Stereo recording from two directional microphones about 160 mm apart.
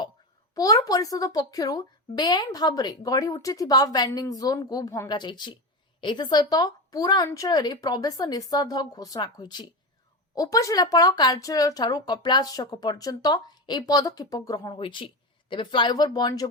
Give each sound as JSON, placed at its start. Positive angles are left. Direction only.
{"t": 0.5, "sound": "a woman's voice", "side_deg": 20}